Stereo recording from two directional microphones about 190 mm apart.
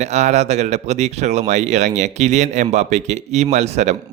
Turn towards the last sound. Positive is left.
turn(degrees=-35)  # may be behind; listen again after turning